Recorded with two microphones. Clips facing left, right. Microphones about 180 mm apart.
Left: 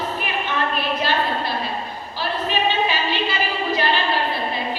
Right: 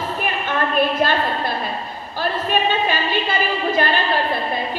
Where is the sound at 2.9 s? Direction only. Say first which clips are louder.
Right 2 dB; 50° right (ahead or behind).